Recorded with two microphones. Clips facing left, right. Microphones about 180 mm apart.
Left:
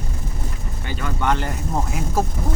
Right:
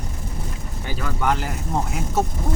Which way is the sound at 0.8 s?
5° right (ahead or behind).